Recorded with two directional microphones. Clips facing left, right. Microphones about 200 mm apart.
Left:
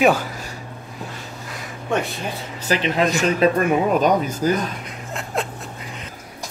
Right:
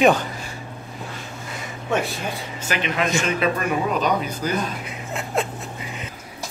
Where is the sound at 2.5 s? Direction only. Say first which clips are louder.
Left 5 dB; 35° left (ahead or behind).